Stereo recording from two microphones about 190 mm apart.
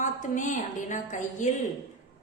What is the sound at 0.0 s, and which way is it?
A woman's voice, 40° left (ahead or behind).